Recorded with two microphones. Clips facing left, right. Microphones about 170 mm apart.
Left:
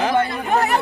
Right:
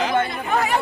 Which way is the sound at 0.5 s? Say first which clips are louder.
Left 2 dB; 40° left (ahead or behind).